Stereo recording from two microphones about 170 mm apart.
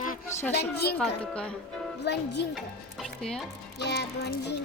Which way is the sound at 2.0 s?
85° left.